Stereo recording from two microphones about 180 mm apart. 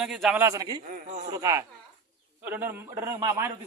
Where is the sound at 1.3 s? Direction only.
20° right (ahead or behind).